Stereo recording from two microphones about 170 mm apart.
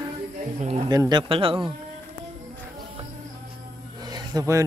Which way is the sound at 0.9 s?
25° right (ahead or behind).